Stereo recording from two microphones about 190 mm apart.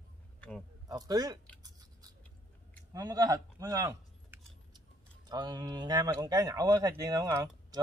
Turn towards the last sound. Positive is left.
turn(degrees=-20)  # may be behind; listen again after turning